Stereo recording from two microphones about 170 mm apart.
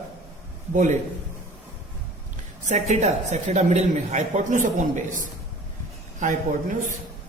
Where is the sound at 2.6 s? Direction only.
45° right (ahead or behind).